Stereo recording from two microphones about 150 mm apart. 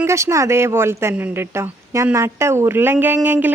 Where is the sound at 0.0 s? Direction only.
20° right (ahead or behind).